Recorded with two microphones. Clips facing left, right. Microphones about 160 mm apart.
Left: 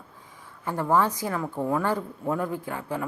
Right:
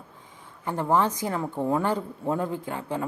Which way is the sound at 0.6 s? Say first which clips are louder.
Even; 20° right (ahead or behind).